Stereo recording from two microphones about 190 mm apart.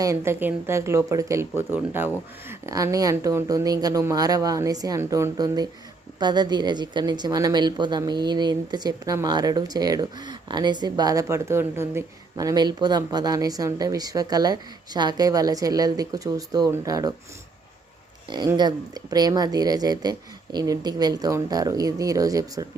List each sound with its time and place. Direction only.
0.0 s a woman's voice: 15° right (ahead or behind)
18.3 s a woman's voice: 20° right (ahead or behind)